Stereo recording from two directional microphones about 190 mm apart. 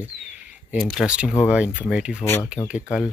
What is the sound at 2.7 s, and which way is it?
Speech, 5° right (ahead or behind).